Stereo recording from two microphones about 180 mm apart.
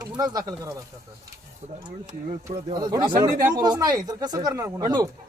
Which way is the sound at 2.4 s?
20° right (ahead or behind).